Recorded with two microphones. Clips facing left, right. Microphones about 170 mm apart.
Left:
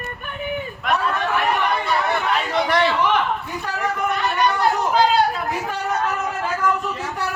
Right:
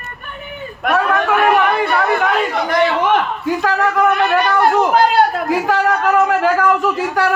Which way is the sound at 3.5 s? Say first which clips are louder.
Right 9 dB; 90° right.